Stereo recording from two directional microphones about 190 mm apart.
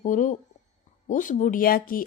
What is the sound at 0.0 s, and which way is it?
Speech, 45° left (ahead or behind).